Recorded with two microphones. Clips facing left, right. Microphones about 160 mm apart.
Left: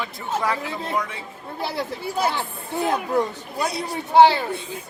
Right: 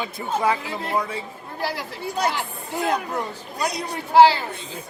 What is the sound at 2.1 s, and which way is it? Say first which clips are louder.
Speech: even; 10° left (ahead or behind).